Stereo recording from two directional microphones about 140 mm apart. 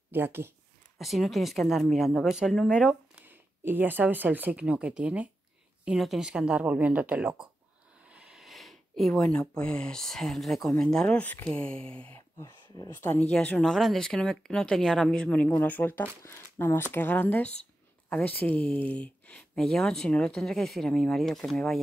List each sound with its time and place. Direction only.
0.1 s speech: 15° right (ahead or behind)
0.9 s speech: centre (ahead or behind)
3.2 s speech: 15° right (ahead or behind); by 12.2 s 10° left (ahead or behind)
12.4 s speech: 20° left (ahead or behind); by 21.7 s 5° left (ahead or behind)